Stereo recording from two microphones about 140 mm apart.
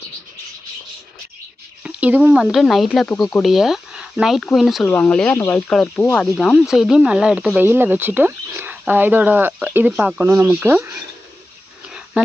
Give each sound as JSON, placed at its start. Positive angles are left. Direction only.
{"t": 1.8, "sound": "speech", "side_deg": -10}
{"t": 4.9, "sound": "speech", "side_deg": 15}